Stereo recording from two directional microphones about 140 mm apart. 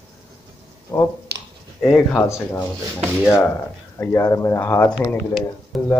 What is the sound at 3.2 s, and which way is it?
Speech, 20° left (ahead or behind).